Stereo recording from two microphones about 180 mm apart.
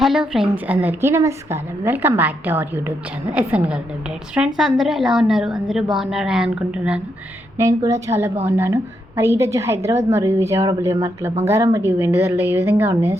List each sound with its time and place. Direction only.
0.0 s a woman's voice: 5° right (ahead or behind)
7.6 s a woman's voice: 20° right (ahead or behind)